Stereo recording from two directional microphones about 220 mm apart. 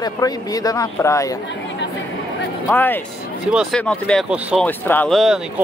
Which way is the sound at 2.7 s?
10° left (ahead or behind).